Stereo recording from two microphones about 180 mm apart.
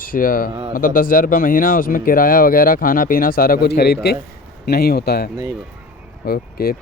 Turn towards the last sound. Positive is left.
turn(degrees=60)  # may be behind; listen again after turning